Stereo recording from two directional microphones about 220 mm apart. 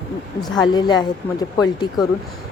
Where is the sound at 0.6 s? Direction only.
20° left (ahead or behind).